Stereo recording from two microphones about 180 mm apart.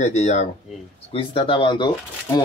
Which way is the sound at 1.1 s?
30° left (ahead or behind).